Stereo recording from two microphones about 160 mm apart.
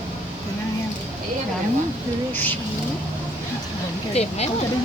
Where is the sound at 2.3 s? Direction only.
10° left (ahead or behind).